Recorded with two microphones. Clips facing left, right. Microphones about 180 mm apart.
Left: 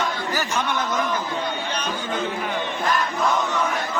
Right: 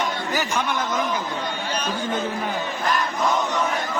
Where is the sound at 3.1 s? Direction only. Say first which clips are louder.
Even; 20° right (ahead or behind).